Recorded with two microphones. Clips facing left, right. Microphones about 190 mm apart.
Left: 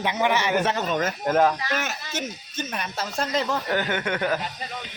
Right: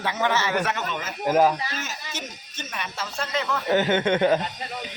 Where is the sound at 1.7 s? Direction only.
60° left (ahead or behind).